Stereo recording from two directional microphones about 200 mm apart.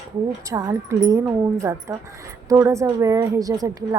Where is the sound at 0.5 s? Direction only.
15° right (ahead or behind).